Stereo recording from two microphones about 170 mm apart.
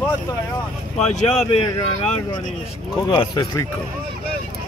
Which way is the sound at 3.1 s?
25° left (ahead or behind).